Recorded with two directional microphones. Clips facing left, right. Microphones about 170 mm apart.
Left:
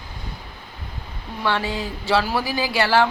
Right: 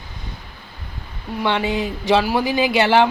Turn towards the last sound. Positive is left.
turn(degrees=-20)  # may be behind; listen again after turning